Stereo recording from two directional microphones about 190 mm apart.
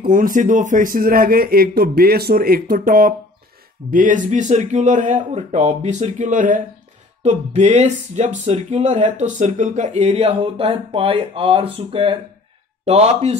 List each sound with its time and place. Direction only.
0.0 s a man's voice: 45° right (ahead or behind)